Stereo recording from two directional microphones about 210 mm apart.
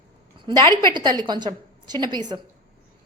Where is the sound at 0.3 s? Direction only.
20° right (ahead or behind).